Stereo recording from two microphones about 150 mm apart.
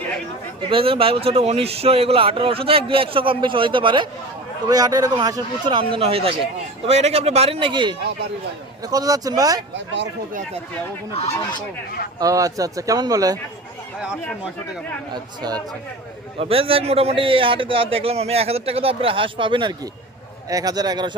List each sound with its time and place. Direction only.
0.7 s a man's voice: 40° right (ahead or behind)
12.2 s a man's voice: 20° right (ahead or behind)
15.1 s a man's voice: 25° right (ahead or behind)
16.4 s a man's voice: 40° right (ahead or behind)